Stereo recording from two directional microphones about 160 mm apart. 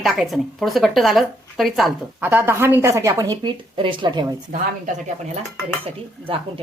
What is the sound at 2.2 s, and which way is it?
Speech, 15° right (ahead or behind).